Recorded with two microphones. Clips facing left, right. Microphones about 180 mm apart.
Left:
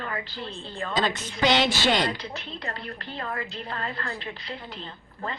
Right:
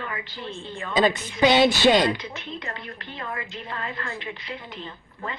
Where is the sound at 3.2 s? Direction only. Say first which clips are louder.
Left 1 dB; 35° left (ahead or behind).